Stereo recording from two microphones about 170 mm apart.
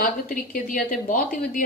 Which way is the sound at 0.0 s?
55° left (ahead or behind).